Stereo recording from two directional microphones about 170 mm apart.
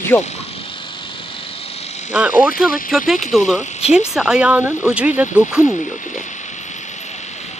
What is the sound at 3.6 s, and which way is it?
Speech, 40° left (ahead or behind).